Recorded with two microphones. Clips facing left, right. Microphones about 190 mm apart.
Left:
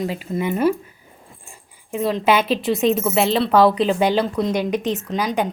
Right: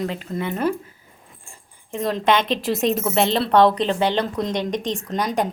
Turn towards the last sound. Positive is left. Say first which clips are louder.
# left 1 dB
turn(degrees=0)  # may be behind; listen again after turning